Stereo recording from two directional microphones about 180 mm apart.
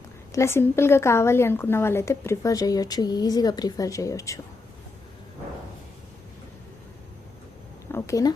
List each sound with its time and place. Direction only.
0.3 s speech: 15° left (ahead or behind)
7.9 s speech: 15° left (ahead or behind)